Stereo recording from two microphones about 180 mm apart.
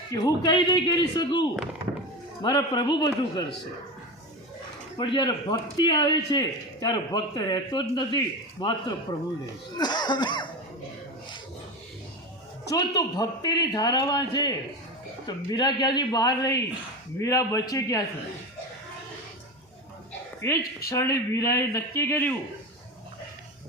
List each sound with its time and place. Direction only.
0.1 s speech: 25° left (ahead or behind)
4.9 s speech: 25° left (ahead or behind)
12.6 s a man's voice: 20° left (ahead or behind)
20.4 s a man's voice: 15° left (ahead or behind)